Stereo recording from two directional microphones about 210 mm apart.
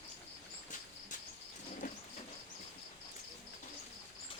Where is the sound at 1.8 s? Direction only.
40° left (ahead or behind).